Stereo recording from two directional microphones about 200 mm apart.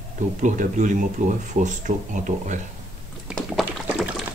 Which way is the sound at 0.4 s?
40° right (ahead or behind).